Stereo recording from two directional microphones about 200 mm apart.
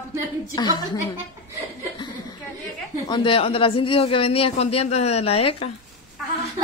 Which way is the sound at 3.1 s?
25° left (ahead or behind).